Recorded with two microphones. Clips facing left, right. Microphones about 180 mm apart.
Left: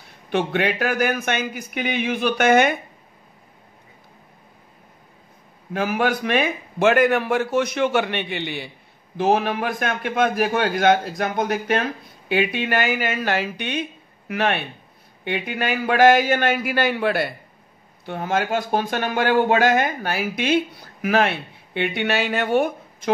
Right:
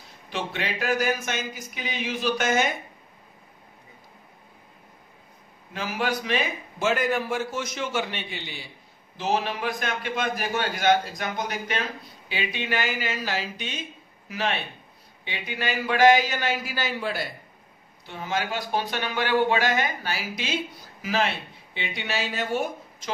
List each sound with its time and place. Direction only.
0.3 s a man's voice: 60° left (ahead or behind)
5.7 s a man's voice: 55° left (ahead or behind)
18.0 s a man's voice: 55° left (ahead or behind)